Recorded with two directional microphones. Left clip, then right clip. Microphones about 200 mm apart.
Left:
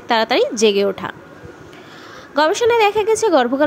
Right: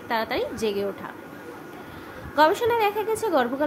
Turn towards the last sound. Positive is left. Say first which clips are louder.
# left 9 dB
turn(degrees=30)  # may be behind; listen again after turning